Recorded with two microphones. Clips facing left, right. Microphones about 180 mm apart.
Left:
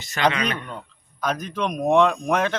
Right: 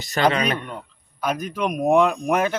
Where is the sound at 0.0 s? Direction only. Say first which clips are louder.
Right 2 dB; 35° right (ahead or behind).